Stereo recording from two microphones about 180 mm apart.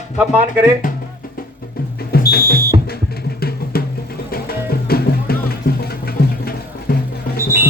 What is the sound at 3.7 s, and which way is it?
Music, 55° left (ahead or behind).